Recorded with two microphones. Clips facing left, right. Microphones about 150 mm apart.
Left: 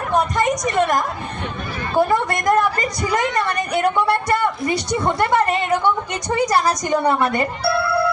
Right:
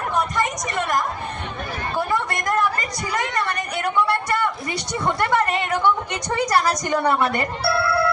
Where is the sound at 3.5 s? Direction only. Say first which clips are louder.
Left 4 dB; 15° left (ahead or behind).